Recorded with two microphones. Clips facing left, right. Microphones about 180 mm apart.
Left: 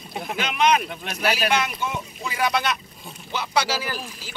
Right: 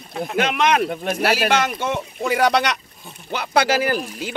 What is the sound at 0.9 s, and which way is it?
Speech, 45° right (ahead or behind).